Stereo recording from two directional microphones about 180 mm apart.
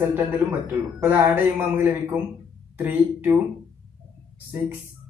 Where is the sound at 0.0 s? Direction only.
10° right (ahead or behind).